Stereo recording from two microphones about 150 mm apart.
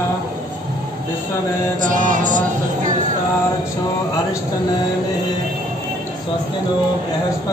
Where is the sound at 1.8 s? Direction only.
60° right (ahead or behind).